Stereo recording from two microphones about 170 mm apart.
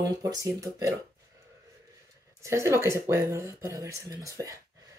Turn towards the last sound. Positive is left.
turn(degrees=-20)  # may be behind; listen again after turning